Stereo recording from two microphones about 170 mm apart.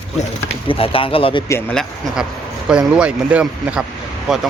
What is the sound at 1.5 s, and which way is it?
Speech, 5° left (ahead or behind).